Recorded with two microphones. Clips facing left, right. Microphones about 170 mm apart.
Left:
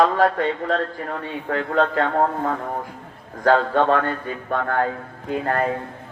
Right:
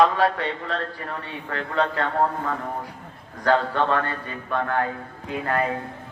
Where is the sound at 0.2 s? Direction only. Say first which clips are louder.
Left 4 dB; 45° left (ahead or behind).